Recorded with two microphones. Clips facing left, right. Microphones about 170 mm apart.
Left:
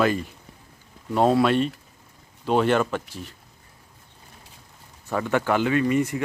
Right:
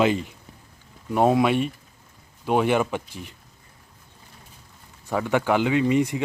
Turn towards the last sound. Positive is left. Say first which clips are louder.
# right 1 dB
turn(degrees=-15)  # may be behind; listen again after turning